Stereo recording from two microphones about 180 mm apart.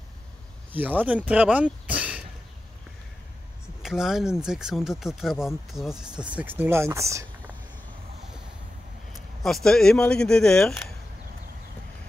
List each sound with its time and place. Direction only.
0.7 s speech: 10° right (ahead or behind)
3.8 s speech: 5° right (ahead or behind)
9.1 s speech: centre (ahead or behind)